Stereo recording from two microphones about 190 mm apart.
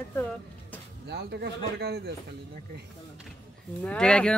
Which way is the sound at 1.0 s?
60° right (ahead or behind).